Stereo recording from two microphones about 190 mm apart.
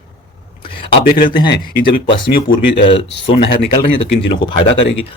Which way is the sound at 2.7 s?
30° left (ahead or behind).